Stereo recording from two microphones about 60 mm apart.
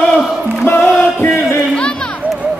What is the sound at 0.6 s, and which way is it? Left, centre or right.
Music, left.